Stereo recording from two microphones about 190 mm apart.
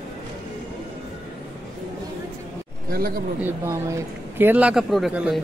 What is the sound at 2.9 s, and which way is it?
Speech, 50° right (ahead or behind).